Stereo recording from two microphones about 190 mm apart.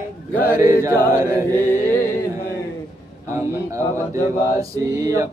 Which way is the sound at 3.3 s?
15° right (ahead or behind).